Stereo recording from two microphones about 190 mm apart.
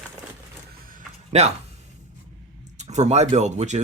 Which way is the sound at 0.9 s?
40° right (ahead or behind).